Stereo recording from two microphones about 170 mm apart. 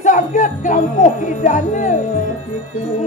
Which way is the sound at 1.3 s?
50° left (ahead or behind).